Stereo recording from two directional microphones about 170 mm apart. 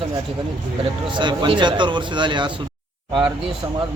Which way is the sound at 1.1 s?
30° right (ahead or behind).